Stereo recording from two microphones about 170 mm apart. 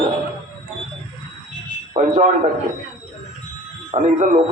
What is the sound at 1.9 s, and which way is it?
Speech, 40° right (ahead or behind).